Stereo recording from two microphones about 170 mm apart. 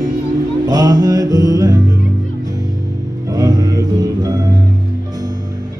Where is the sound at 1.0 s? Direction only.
20° right (ahead or behind).